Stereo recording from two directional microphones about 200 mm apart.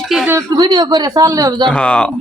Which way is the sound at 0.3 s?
15° right (ahead or behind).